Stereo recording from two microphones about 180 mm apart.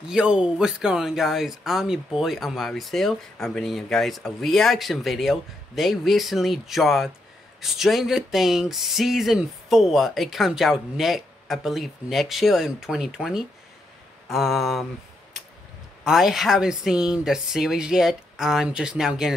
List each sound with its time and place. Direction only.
0.1 s speech: 5° right (ahead or behind)
16.0 s speech: centre (ahead or behind)